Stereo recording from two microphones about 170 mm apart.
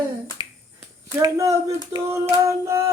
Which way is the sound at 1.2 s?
20° right (ahead or behind).